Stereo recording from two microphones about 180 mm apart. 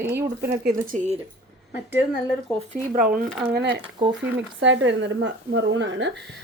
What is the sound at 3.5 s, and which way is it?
Speech, 65° right (ahead or behind).